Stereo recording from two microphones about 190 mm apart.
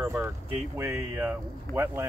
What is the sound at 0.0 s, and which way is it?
Speech, 10° right (ahead or behind).